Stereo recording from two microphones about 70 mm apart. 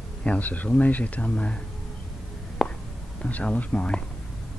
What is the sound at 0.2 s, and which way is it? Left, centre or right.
Speech, left.